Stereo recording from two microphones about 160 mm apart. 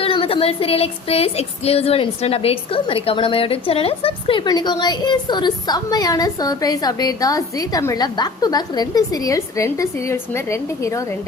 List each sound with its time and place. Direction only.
0.0 s speech: 35° left (ahead or behind); by 11.0 s 20° left (ahead or behind)